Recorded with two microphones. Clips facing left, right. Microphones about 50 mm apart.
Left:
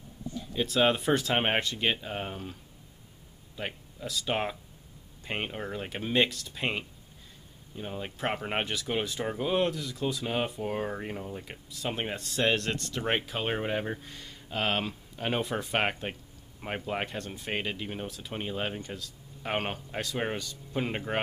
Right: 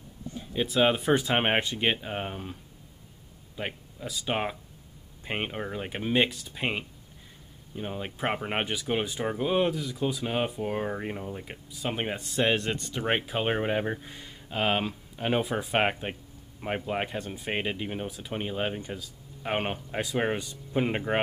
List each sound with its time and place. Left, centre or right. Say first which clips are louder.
0.5 s speech: right 1 dB; centre
3.5 s speech: right 2 dB; centre